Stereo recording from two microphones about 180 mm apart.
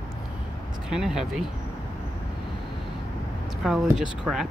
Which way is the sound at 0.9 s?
5° right (ahead or behind).